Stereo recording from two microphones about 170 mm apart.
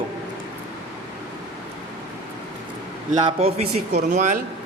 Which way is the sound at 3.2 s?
35° right (ahead or behind).